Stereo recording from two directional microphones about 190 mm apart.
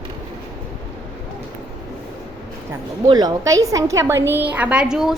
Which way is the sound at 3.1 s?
20° right (ahead or behind).